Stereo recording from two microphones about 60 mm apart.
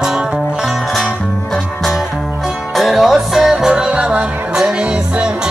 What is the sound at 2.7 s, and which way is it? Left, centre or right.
Music, centre.